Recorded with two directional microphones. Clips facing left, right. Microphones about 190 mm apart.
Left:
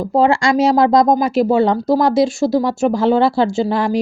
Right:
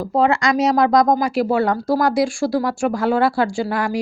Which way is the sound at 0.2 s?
30° left (ahead or behind).